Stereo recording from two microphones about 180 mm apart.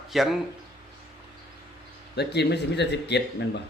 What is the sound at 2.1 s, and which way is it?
Speech, 65° left (ahead or behind).